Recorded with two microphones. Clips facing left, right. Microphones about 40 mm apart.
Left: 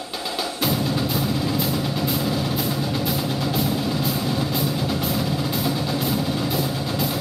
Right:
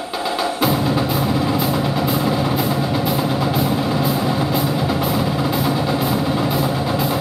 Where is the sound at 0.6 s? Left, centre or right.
Centre.